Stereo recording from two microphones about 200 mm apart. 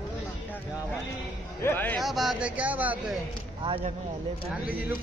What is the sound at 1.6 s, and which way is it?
A man's voice, 10° left (ahead or behind).